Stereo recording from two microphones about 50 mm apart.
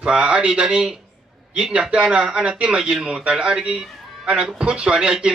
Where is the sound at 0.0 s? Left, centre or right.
Centre.